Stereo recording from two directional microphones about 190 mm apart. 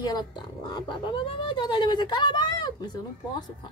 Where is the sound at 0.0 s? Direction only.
20° left (ahead or behind).